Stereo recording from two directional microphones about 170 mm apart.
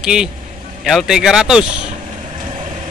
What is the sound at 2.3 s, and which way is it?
Vehicle, 30° right (ahead or behind).